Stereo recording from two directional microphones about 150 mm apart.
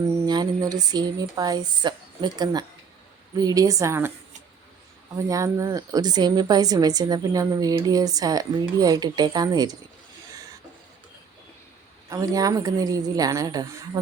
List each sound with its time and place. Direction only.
0.1 s a woman's voice: 25° right (ahead or behind)
5.1 s a woman's voice: 20° right (ahead or behind)
12.0 s a woman's voice: 25° right (ahead or behind)